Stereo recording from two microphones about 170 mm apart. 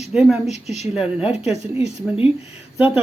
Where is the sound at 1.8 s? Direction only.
35° left (ahead or behind).